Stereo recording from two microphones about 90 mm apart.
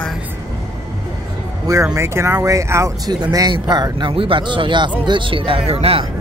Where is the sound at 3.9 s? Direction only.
70° right (ahead or behind); by 6.0 s 90° right.